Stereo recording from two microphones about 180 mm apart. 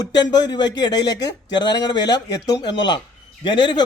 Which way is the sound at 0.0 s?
25° left (ahead or behind).